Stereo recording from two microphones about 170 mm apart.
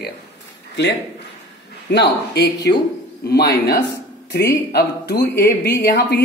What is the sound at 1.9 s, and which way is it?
Speech, 80° left.